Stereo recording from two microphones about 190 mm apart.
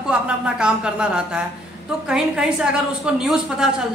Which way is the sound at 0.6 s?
5° right (ahead or behind).